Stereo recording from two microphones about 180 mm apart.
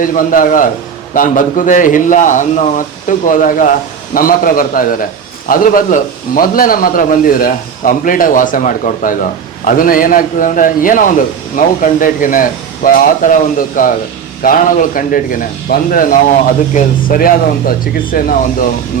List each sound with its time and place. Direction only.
0.0 s a man's voice: 50° left (ahead or behind)